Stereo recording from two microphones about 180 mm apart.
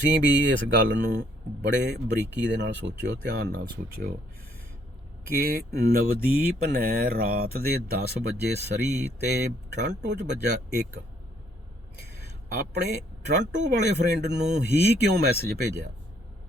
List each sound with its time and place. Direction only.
0.1 s speech: 85° right
1.6 s speech: 70° right (ahead or behind)
3.2 s speech: 60° right (ahead or behind)
5.4 s speech: 60° right (ahead or behind)
13.2 s speech: 70° right (ahead or behind)